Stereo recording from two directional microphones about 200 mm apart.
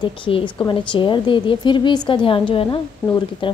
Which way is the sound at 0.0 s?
25° left (ahead or behind).